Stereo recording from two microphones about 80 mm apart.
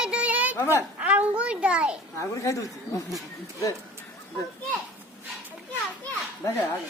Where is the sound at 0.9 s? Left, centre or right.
Centre.